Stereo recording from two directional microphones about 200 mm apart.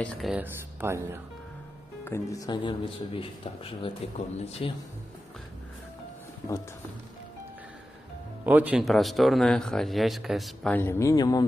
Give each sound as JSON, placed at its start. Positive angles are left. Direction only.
{"t": 0.0, "sound": "speech", "side_deg": 0}
{"t": 2.0, "sound": "a man's voice", "side_deg": 15}
{"t": 8.5, "sound": "speech", "side_deg": -10}